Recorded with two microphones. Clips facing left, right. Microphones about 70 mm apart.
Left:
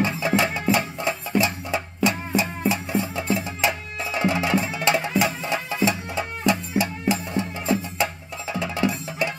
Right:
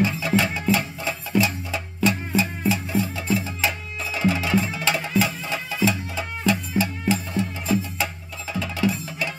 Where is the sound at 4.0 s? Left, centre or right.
Left.